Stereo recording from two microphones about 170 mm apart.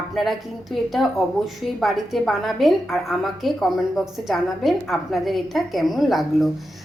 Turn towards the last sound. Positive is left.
turn(degrees=0)  # may be behind; listen again after turning